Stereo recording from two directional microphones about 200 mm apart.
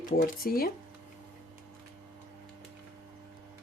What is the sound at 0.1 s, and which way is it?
Speech, 45° left (ahead or behind).